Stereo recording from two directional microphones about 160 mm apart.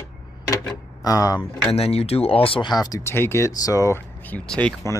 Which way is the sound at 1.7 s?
40° left (ahead or behind).